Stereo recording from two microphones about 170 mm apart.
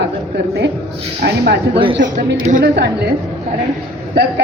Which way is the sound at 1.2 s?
75° right (ahead or behind).